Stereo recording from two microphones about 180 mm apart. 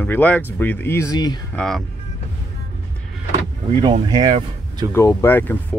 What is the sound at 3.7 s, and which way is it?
Speech, 25° right (ahead or behind).